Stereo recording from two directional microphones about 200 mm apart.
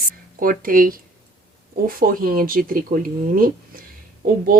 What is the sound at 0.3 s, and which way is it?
Speech, 45° right (ahead or behind).